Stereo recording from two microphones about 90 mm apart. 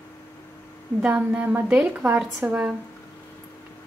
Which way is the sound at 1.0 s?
15° right (ahead or behind).